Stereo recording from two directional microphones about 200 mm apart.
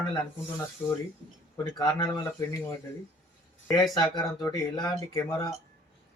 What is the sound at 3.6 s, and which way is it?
Speech, 20° left (ahead or behind).